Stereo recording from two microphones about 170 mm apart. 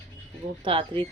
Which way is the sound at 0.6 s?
30° right (ahead or behind).